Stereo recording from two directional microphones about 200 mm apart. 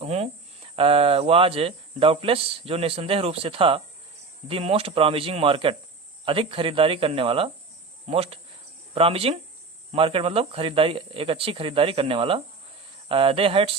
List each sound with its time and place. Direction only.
0.0 s speech: 30° right (ahead or behind)